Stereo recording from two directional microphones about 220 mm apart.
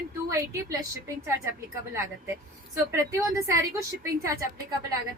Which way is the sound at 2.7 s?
15° right (ahead or behind).